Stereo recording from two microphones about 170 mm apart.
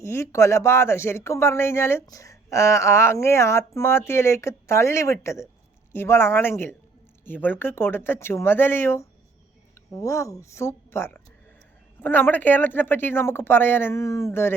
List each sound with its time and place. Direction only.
0.0 s speech: 15° left (ahead or behind)